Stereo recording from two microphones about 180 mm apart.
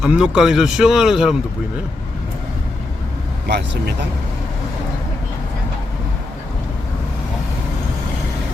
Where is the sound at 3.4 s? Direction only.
70° right (ahead or behind).